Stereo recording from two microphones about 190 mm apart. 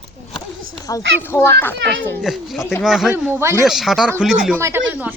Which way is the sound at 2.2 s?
Centre (ahead or behind).